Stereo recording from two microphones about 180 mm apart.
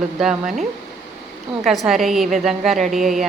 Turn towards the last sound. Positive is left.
turn(degrees=0)  # may be behind; listen again after turning